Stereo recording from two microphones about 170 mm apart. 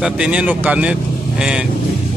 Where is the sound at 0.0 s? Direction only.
5° right (ahead or behind).